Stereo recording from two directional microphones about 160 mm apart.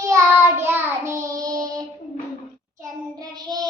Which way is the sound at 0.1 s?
15° right (ahead or behind).